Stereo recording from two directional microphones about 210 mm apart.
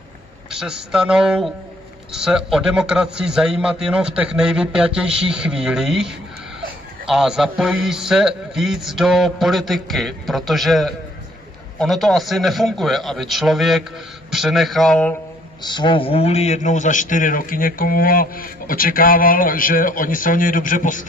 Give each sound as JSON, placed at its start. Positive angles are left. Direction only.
{"t": 0.5, "sound": "a man's voice", "side_deg": -5}
{"t": 15.6, "sound": "a man's voice", "side_deg": 20}